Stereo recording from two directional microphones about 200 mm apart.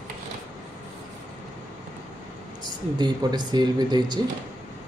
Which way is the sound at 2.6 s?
20° right (ahead or behind).